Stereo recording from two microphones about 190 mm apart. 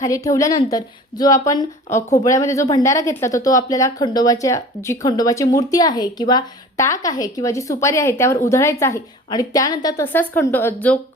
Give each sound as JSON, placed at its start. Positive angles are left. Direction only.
{"t": 0.0, "sound": "a woman's voice", "side_deg": 15}
{"t": 2.0, "sound": "a woman's voice", "side_deg": 40}
{"t": 2.2, "sound": "speech", "side_deg": 15}